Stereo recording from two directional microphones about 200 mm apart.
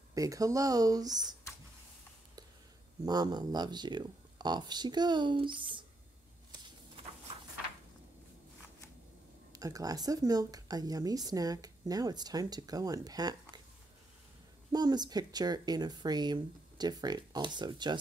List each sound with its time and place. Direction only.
0.1 s speech: 15° right (ahead or behind)
3.1 s speech: 20° right (ahead or behind)
9.5 s speech: 15° right (ahead or behind)
14.7 s speech: 20° right (ahead or behind)